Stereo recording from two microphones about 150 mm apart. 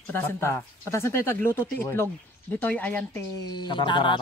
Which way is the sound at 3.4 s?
30° left (ahead or behind).